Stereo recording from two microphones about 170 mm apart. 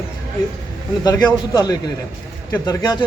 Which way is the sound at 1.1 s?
25° left (ahead or behind).